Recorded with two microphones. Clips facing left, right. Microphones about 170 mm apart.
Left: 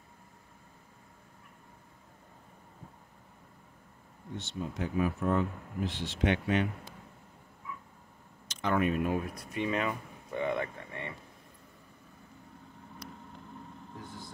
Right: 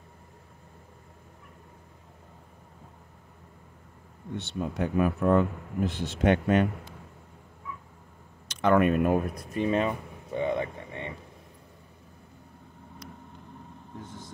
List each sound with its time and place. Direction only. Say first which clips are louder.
4.4 s speech: right 6 dB; 65° right (ahead or behind)
8.5 s speech: right 7 dB; 65° right (ahead or behind)
9.5 s speech: right 5 dB; 35° right (ahead or behind); by 11.1 s 20° right (ahead or behind)